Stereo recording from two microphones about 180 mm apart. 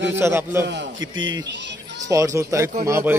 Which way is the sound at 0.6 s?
85° right.